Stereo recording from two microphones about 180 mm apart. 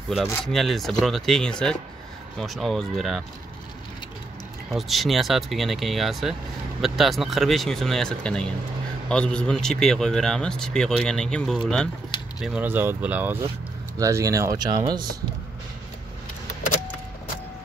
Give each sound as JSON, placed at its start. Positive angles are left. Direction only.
{"t": 0.1, "sound": "a man's voice", "side_deg": 0}
{"t": 4.6, "sound": "a man's voice", "side_deg": 0}